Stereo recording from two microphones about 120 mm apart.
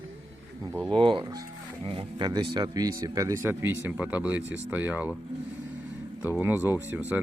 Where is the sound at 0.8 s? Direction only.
45° right (ahead or behind).